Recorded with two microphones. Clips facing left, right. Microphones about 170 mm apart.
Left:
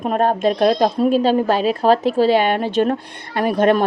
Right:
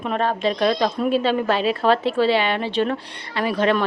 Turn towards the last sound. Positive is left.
turn(degrees=50)  # may be behind; listen again after turning